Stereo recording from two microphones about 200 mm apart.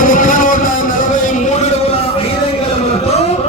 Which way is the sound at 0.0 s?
40° left (ahead or behind).